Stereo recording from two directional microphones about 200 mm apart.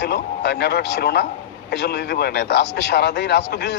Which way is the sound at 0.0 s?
55° left (ahead or behind).